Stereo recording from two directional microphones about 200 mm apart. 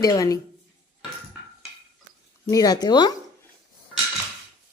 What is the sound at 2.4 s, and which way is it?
Speech, 20° left (ahead or behind).